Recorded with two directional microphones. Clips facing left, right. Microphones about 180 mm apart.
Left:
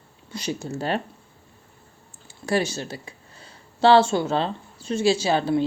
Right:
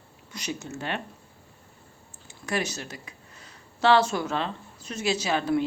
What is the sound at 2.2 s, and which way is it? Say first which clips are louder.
Speech: left 6 dB; 30° left (ahead or behind).